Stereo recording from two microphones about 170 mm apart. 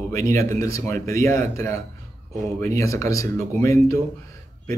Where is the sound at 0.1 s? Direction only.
15° left (ahead or behind).